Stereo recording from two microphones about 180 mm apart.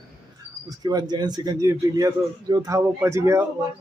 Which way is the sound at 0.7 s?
20° right (ahead or behind).